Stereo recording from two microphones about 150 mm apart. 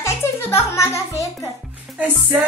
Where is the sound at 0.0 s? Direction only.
15° left (ahead or behind).